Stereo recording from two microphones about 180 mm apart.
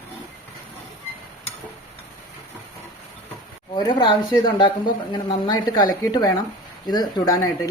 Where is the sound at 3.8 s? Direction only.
25° left (ahead or behind).